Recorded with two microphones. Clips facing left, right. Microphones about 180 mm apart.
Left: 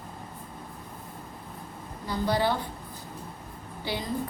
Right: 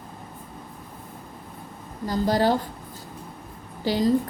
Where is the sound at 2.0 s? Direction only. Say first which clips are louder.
Right 5 dB; 40° right (ahead or behind).